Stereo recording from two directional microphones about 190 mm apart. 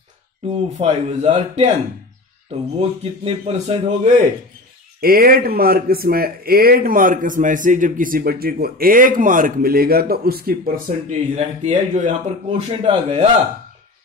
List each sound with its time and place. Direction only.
0.5 s a man's voice: 35° right (ahead or behind)
2.8 s a man's voice: 30° right (ahead or behind)
5.0 s speech: 50° right (ahead or behind)
11.3 s a man's voice: 35° right (ahead or behind)